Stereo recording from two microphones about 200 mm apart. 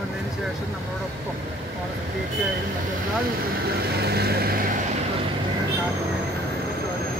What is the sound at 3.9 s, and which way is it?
Vehicle, 55° right (ahead or behind).